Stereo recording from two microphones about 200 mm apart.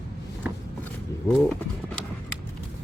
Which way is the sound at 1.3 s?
5° left (ahead or behind).